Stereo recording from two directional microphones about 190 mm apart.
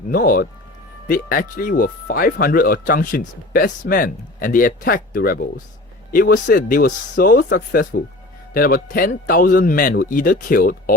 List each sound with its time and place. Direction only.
0.1 s speech: 50° left (ahead or behind)